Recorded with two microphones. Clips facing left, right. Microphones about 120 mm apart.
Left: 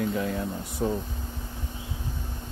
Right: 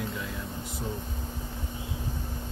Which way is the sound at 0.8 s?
90° left.